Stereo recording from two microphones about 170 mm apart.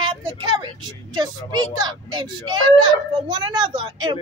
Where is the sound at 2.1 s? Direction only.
25° right (ahead or behind).